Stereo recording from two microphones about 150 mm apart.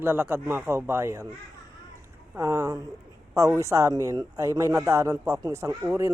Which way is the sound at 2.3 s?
20° right (ahead or behind).